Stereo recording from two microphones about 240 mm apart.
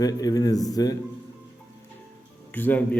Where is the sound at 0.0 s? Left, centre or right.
Centre.